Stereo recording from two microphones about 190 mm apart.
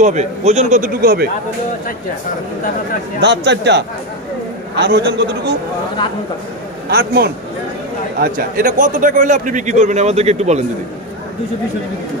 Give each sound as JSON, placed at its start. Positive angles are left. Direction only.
{"t": 0.0, "sound": "a man's voice", "side_deg": -40}
{"t": 3.2, "sound": "speech", "side_deg": -65}
{"t": 6.9, "sound": "a man's voice", "side_deg": -55}